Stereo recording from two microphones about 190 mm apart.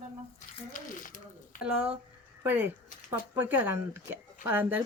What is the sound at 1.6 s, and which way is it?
Speech, 10° right (ahead or behind).